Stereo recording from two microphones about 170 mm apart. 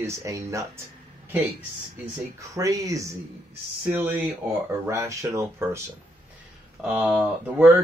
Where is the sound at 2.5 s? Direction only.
20° right (ahead or behind).